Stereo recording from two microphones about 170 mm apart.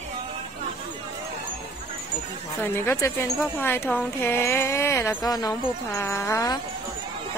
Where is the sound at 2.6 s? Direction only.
15° left (ahead or behind).